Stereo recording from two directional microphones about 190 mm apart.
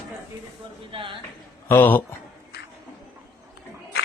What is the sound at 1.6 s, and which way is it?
Speech, 10° left (ahead or behind).